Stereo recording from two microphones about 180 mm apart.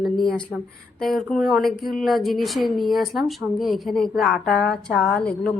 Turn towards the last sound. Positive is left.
turn(degrees=5)  # may be behind; listen again after turning